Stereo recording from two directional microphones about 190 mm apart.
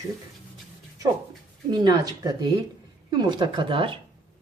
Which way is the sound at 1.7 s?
20° right (ahead or behind).